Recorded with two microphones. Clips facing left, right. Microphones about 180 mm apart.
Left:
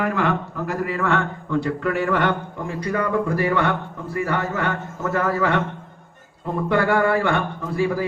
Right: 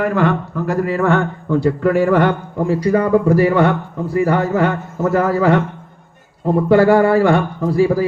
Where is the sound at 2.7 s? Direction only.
30° right (ahead or behind).